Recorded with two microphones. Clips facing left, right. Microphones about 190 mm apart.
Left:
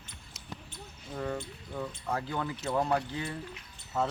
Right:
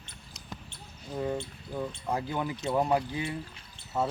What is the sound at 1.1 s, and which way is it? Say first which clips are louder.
Speech: right 3 dB; 15° right (ahead or behind).